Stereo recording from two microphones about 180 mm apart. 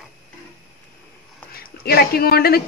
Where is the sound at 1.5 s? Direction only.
60° left (ahead or behind).